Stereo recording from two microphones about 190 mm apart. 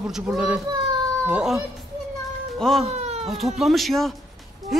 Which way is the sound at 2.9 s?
35° right (ahead or behind).